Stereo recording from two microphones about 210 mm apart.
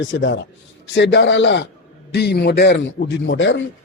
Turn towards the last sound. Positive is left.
turn(degrees=60)  # may be behind; listen again after turning